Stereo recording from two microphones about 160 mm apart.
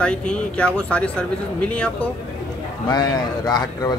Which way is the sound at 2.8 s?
25° left (ahead or behind).